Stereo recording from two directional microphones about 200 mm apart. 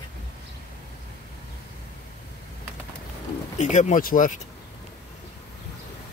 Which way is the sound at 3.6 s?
35° left (ahead or behind).